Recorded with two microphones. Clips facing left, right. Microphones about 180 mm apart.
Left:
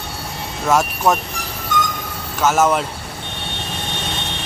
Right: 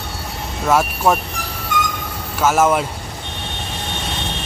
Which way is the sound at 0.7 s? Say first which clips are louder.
Right 1 dB; 5° right (ahead or behind).